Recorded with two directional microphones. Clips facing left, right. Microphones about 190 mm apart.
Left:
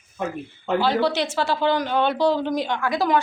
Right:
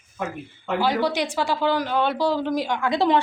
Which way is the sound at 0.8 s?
10° right (ahead or behind).